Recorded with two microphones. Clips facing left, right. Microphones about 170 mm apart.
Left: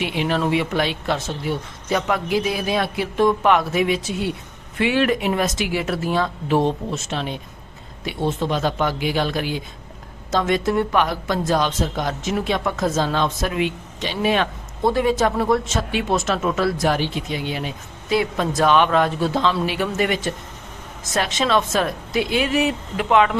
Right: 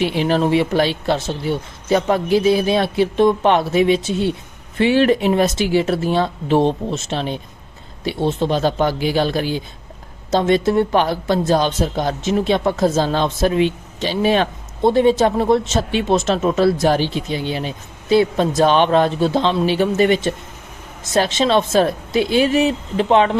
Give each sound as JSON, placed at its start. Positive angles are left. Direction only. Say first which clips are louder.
{"t": 0.0, "sound": "speech", "louder": "right 5 dB", "side_deg": -35}